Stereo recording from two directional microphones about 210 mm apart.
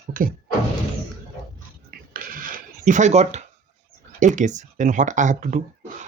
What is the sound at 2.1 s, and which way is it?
Cash register, 40° right (ahead or behind).